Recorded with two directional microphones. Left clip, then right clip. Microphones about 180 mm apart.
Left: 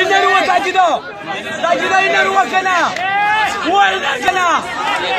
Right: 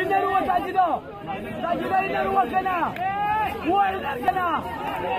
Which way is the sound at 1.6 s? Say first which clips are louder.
Left 10 dB; 55° left (ahead or behind).